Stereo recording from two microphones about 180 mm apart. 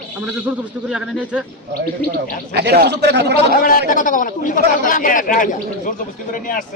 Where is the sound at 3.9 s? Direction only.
45° left (ahead or behind).